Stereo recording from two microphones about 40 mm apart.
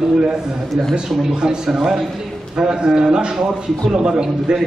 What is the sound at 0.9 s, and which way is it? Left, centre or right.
A man's voice, right.